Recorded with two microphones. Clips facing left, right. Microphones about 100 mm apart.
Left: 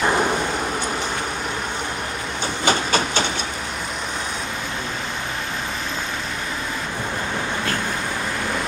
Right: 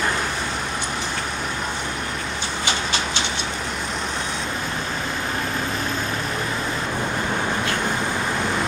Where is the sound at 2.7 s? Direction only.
45° left (ahead or behind).